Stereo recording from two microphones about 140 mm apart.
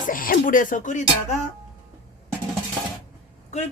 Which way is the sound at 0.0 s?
85° left.